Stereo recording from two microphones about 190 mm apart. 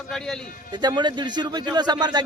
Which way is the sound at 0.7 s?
25° right (ahead or behind).